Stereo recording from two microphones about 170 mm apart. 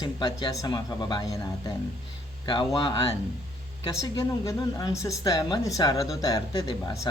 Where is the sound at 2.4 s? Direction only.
30° left (ahead or behind).